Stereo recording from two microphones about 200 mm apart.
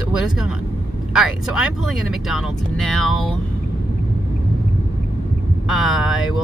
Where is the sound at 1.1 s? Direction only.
5° right (ahead or behind).